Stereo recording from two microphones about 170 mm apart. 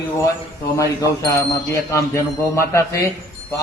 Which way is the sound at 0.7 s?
20° left (ahead or behind).